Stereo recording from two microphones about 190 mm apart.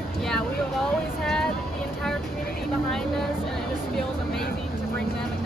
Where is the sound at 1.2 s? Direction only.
Centre (ahead or behind).